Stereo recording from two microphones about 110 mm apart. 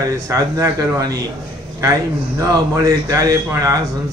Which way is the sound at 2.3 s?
30° right (ahead or behind).